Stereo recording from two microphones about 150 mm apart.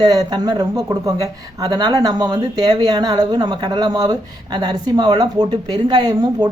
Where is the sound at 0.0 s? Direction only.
25° right (ahead or behind).